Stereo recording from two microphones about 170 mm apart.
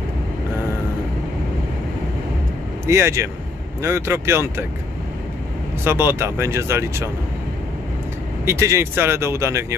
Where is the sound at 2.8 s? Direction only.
15° right (ahead or behind).